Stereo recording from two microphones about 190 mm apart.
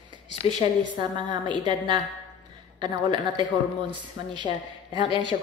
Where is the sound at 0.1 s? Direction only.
25° right (ahead or behind).